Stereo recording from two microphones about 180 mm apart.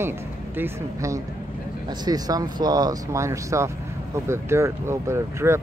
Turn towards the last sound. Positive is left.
turn(degrees=-15)  # may be behind; listen again after turning